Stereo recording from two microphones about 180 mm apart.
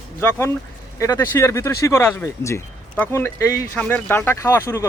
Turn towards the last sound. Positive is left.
turn(degrees=15)  # may be behind; listen again after turning